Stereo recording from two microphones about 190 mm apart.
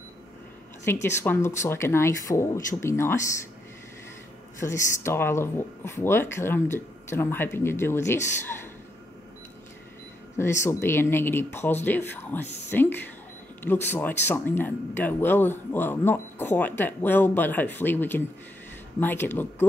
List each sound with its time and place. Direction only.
0.9 s speech: 10° left (ahead or behind)
4.6 s speech: 15° left (ahead or behind)
10.6 s speech: 15° left (ahead or behind)
12.4 s speech: 65° left (ahead or behind)
13.6 s speech: 10° left (ahead or behind)